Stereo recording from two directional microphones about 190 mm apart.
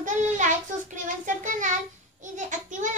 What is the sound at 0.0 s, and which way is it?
Child singing, 40° right (ahead or behind).